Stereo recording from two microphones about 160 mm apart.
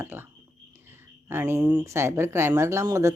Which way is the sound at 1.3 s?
15° right (ahead or behind).